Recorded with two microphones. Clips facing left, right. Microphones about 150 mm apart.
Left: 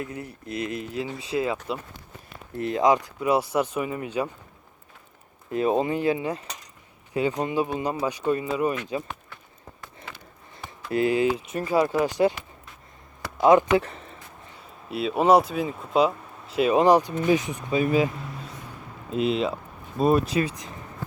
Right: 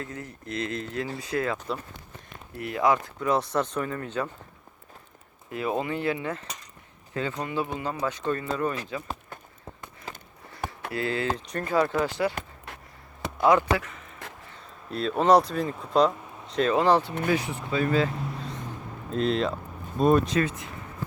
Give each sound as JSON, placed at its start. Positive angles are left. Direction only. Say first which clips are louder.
{"t": 0.0, "sound": "speech", "louder": "left 3 dB", "side_deg": 15}
{"t": 2.6, "sound": "speech", "louder": "left 3 dB", "side_deg": 25}
{"t": 5.5, "sound": "speech", "louder": "left 5 dB", "side_deg": 25}
{"t": 10.1, "sound": "a sound", "louder": "right 3 dB", "side_deg": -35}
{"t": 10.9, "sound": "speech", "louder": "left 7 dB", "side_deg": 15}
{"t": 12.3, "sound": "a sound", "louder": "right 5 dB", "side_deg": -50}
{"t": 13.4, "sound": "speech", "louder": "left 4 dB", "side_deg": 15}
{"t": 13.7, "sound": "a sound", "louder": "left 9 dB", "side_deg": 30}
{"t": 14.8, "sound": "speech", "louder": "left 1 dB", "side_deg": 5}